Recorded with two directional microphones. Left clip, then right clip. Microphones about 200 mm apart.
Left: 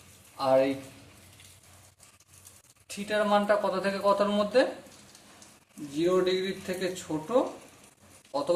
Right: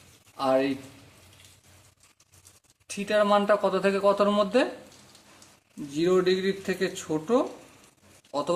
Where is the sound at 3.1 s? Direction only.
45° right (ahead or behind).